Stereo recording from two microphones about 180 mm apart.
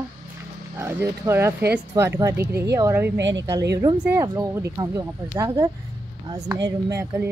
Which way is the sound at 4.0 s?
15° right (ahead or behind).